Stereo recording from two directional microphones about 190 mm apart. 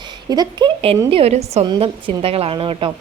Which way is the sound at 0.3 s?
20° right (ahead or behind).